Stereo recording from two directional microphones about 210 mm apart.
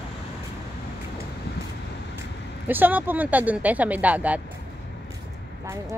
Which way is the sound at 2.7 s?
10° right (ahead or behind).